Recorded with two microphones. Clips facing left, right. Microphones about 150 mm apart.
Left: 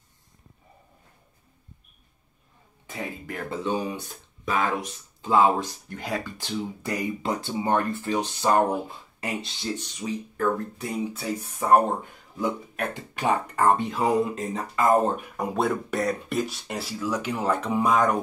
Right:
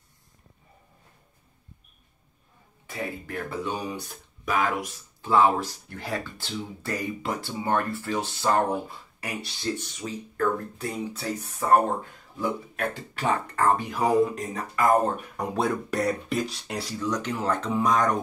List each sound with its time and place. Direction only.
3.3 s speech: 25° left (ahead or behind)
15.3 s speech: centre (ahead or behind)